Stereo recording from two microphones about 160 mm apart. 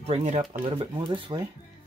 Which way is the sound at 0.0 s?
40° right (ahead or behind).